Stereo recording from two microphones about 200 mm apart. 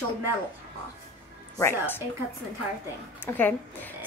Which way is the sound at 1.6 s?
10° left (ahead or behind).